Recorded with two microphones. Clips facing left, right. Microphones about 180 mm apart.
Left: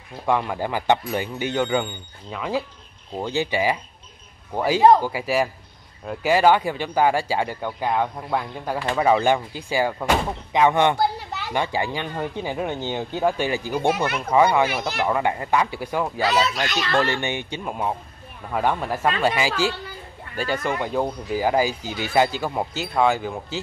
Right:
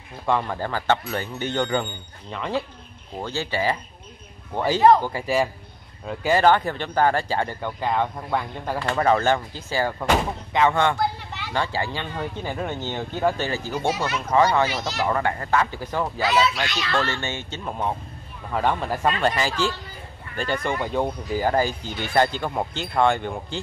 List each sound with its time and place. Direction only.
0.3 s speech: 10° left (ahead or behind)
3.2 s speech: 15° left (ahead or behind)
11.0 s children playing: 40° left (ahead or behind)
11.5 s speech: 15° left (ahead or behind)
13.8 s speech: 55° left (ahead or behind)
14.3 s speech: 10° left (ahead or behind)
14.7 s speech: 55° left (ahead or behind)
15.0 s speech: 15° left (ahead or behind)
16.3 s speech: 40° left (ahead or behind)
16.9 s speech: 15° left (ahead or behind)